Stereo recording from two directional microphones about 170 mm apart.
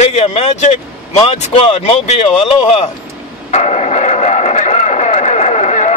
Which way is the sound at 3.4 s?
40° left (ahead or behind).